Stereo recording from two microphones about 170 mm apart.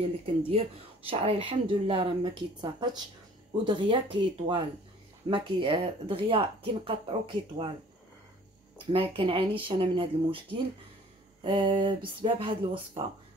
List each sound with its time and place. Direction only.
0.4 s speech: 35° right (ahead or behind)
8.9 s speech: 35° right (ahead or behind)